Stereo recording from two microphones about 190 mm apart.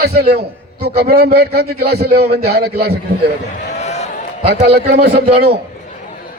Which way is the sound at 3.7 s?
35° left (ahead or behind).